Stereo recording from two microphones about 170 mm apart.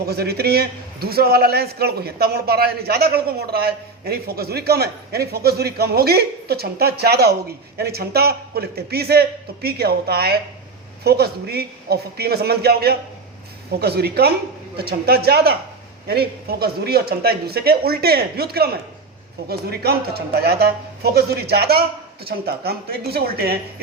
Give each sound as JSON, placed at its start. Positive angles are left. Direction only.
{"t": 0.0, "sound": "a man's voice", "side_deg": -70}